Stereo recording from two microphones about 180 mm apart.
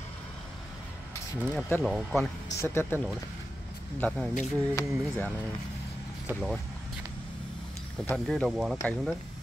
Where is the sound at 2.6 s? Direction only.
10° left (ahead or behind).